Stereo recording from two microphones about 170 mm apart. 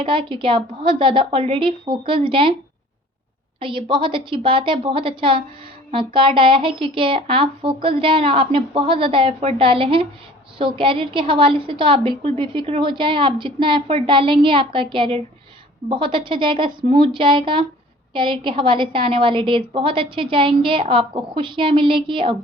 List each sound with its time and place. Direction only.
0.0 s a woman's voice: 30° right (ahead or behind)
3.6 s a woman's voice: 30° right (ahead or behind)